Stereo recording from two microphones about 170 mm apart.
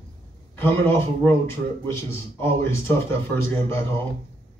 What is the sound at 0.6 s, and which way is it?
A man's voice, 15° left (ahead or behind).